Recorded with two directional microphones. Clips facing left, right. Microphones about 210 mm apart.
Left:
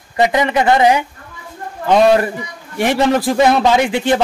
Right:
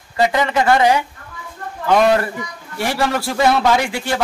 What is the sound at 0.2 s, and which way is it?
A man's voice, 20° left (ahead or behind).